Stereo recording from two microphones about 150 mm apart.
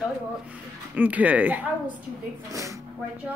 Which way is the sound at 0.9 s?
10° right (ahead or behind).